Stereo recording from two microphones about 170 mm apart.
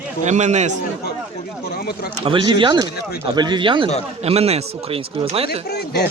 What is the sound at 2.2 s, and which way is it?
Speech, 30° right (ahead or behind).